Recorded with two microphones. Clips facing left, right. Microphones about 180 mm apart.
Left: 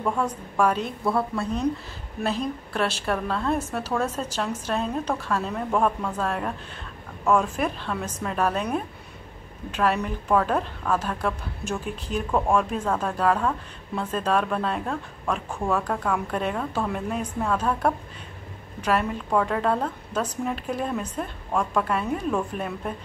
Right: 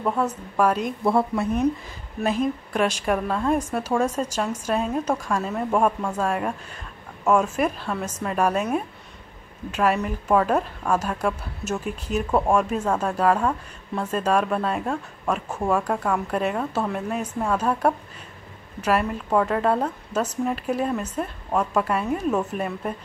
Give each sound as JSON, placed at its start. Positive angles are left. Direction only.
{"t": 0.0, "sound": "a woman's voice", "side_deg": -5}
{"t": 1.0, "sound": "speech", "side_deg": -20}
{"t": 2.4, "sound": "a woman's voice", "side_deg": -10}